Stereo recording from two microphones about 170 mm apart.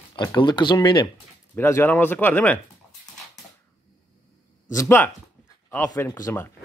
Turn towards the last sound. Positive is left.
turn(degrees=15)  # may be behind; listen again after turning